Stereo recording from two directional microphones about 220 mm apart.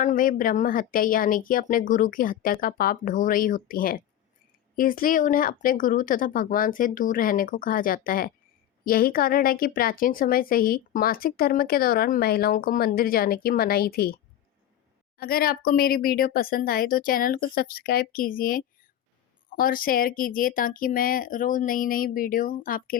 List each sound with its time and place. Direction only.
0.0 s speech: 35° left (ahead or behind)
15.2 s speech: 45° left (ahead or behind)